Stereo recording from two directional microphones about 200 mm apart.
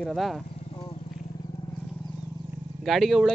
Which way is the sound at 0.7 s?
25° left (ahead or behind).